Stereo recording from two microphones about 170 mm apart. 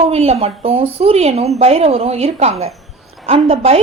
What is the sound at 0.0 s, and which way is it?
A woman's voice, 35° right (ahead or behind).